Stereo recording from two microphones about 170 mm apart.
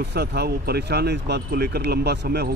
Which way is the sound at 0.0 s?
75° right (ahead or behind).